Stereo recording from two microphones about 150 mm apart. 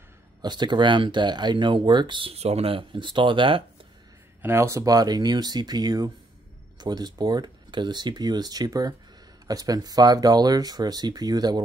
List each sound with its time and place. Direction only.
0.4 s speech: 30° right (ahead or behind)
4.4 s speech: 15° right (ahead or behind)